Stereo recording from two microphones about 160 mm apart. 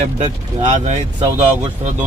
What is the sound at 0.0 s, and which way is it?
Speech, 45° right (ahead or behind).